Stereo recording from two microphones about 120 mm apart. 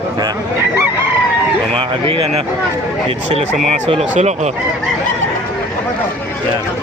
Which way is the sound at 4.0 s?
85° right.